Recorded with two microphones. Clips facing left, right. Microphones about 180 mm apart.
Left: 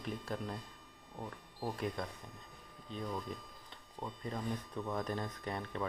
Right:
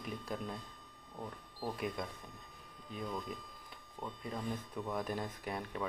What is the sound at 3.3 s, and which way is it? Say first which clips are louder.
Speech: even; 10° right (ahead or behind).